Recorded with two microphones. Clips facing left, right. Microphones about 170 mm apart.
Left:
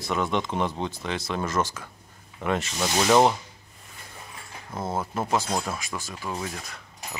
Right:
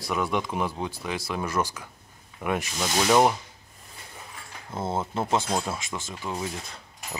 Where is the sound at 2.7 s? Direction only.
5° left (ahead or behind).